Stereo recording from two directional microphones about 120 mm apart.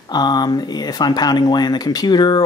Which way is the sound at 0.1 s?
35° left (ahead or behind).